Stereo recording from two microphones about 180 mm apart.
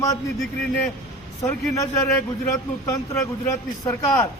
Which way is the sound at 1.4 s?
15° left (ahead or behind).